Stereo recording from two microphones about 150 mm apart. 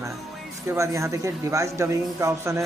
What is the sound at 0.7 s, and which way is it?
A man's voice, 20° right (ahead or behind).